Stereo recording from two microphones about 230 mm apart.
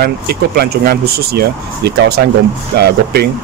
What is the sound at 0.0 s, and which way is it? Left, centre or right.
Speech, right.